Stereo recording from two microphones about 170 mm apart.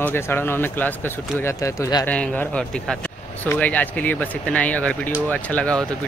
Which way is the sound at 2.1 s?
10° left (ahead or behind).